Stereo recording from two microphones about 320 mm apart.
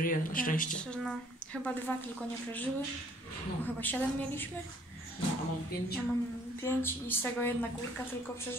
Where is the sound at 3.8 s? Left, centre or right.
Centre.